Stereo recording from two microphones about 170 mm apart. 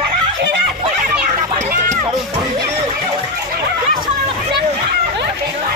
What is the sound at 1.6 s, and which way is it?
Music, 45° right (ahead or behind).